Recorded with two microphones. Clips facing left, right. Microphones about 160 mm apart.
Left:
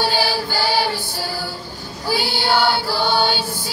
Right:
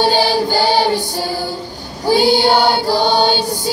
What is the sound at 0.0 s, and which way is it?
Music, 20° right (ahead or behind).